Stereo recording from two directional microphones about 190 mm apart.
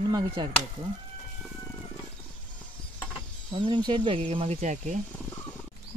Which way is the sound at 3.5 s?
25° right (ahead or behind).